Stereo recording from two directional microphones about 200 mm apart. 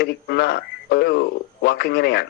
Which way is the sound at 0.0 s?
55° left (ahead or behind).